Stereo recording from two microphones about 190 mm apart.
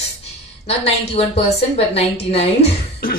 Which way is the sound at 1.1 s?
30° left (ahead or behind).